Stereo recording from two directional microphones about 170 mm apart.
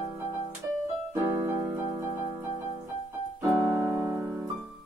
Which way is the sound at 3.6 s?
10° right (ahead or behind).